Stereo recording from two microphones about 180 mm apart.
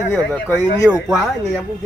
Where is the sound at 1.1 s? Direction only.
Centre (ahead or behind).